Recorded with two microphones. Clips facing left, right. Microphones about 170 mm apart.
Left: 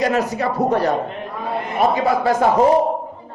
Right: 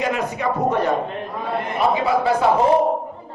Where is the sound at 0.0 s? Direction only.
35° left (ahead or behind).